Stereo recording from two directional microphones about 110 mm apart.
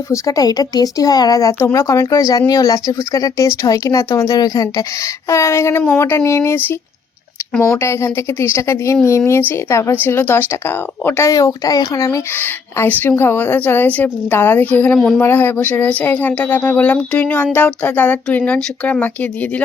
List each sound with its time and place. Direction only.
0.1 s a woman's voice: 30° left (ahead or behind)
7.8 s a woman's voice: 25° left (ahead or behind)
12.3 s speech: 20° left (ahead or behind)